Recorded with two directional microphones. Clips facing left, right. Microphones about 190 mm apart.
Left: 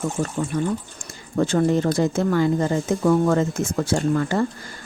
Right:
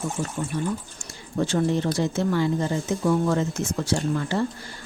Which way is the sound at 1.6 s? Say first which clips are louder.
Left 4 dB; 45° left (ahead or behind).